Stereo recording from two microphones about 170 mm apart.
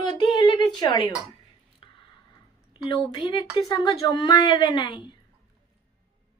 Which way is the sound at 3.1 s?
25° left (ahead or behind).